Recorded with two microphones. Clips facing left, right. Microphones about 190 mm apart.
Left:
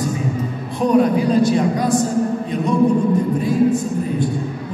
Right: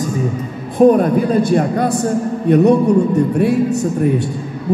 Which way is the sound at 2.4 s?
70° right (ahead or behind).